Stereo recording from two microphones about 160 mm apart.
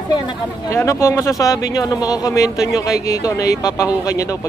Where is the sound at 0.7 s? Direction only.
15° left (ahead or behind).